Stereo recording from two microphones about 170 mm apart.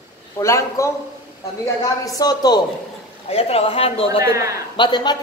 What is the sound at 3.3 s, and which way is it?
Speech, 35° left (ahead or behind).